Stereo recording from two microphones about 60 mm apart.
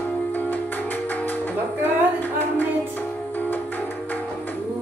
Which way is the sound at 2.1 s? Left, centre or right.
Left.